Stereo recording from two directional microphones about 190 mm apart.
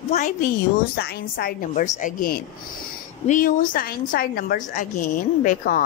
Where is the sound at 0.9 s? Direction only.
55° left (ahead or behind).